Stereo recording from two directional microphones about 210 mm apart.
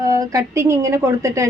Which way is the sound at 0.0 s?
15° right (ahead or behind).